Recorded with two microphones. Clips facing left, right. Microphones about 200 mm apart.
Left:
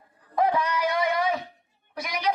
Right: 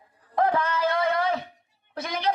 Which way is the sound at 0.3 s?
15° left (ahead or behind).